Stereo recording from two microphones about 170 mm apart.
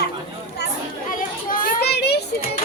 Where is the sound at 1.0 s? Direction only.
55° left (ahead or behind); by 2.2 s 75° left (ahead or behind).